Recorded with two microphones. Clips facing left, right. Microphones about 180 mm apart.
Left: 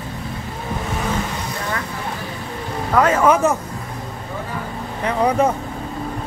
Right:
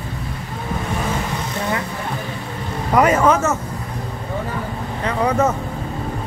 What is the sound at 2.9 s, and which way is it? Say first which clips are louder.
Speech: right 1 dB; 10° right (ahead or behind).